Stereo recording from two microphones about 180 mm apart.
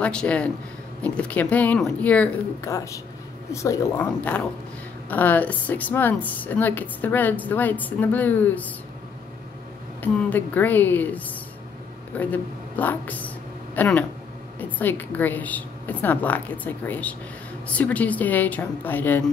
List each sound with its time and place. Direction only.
0.0 s a woman's voice: 5° left (ahead or behind)
10.0 s a woman's voice: 10° left (ahead or behind)